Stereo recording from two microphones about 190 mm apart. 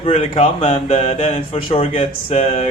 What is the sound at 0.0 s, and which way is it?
Speech, 30° left (ahead or behind).